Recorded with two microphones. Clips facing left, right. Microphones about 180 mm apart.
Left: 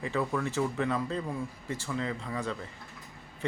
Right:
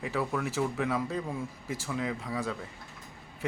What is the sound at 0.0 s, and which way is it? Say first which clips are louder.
Speech: left 1 dB; 5° right (ahead or behind).